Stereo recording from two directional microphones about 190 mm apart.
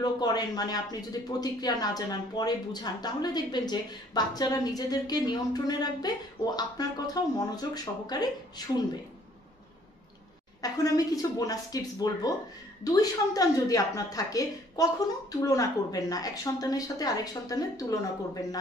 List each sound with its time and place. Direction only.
0.0 s speech: 20° left (ahead or behind)
10.6 s speech: 20° left (ahead or behind)